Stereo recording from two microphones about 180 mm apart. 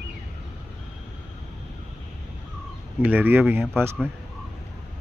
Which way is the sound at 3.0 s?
10° right (ahead or behind).